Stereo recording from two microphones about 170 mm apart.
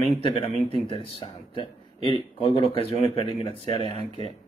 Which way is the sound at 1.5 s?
30° left (ahead or behind).